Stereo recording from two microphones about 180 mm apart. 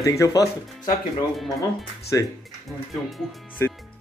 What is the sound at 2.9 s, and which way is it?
Speech, centre (ahead or behind).